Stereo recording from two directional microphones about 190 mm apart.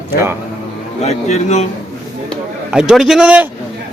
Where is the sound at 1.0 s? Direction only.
35° left (ahead or behind).